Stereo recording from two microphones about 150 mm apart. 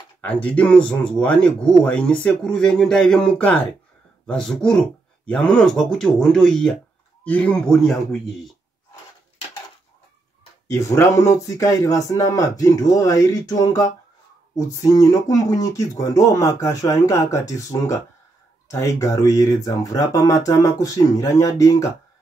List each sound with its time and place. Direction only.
0.2 s speech: 10° left (ahead or behind)
10.7 s speech: 20° left (ahead or behind)